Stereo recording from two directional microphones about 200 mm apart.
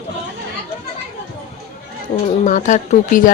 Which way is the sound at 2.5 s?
40° left (ahead or behind).